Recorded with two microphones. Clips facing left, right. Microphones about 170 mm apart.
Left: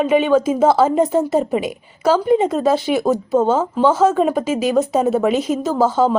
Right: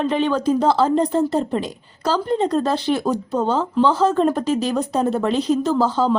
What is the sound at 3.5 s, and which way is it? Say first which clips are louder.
Speech: left 3 dB; 45° left (ahead or behind).